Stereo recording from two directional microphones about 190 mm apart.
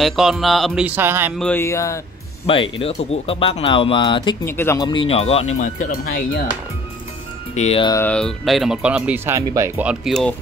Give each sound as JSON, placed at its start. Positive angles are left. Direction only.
{"t": 0.0, "sound": "speech", "side_deg": 0}
{"t": 1.4, "sound": "speech", "side_deg": 10}
{"t": 2.4, "sound": "speech", "side_deg": 30}
{"t": 4.5, "sound": "speech", "side_deg": 15}
{"t": 4.8, "sound": "speech", "side_deg": 25}
{"t": 7.5, "sound": "speech", "side_deg": 30}
{"t": 7.9, "sound": "speech", "side_deg": 10}
{"t": 9.8, "sound": "speech", "side_deg": 0}